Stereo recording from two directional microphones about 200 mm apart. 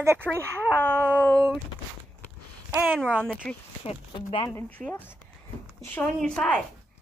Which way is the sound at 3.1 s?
10° right (ahead or behind).